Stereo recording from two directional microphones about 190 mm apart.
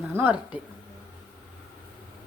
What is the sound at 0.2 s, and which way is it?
Speech, 5° right (ahead or behind).